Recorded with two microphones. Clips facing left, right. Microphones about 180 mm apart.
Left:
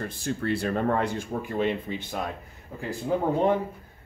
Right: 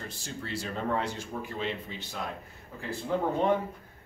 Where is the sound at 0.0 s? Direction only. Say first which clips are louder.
Left 10 dB; 55° left (ahead or behind).